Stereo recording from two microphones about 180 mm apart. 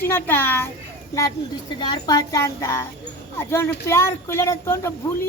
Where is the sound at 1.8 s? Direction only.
25° left (ahead or behind).